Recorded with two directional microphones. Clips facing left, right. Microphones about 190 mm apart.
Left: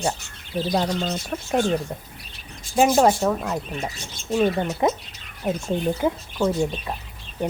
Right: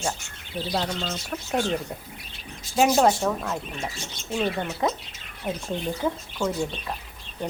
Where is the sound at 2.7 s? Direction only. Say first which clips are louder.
Left 2 dB; centre (ahead or behind); by 5.0 s 20° left (ahead or behind).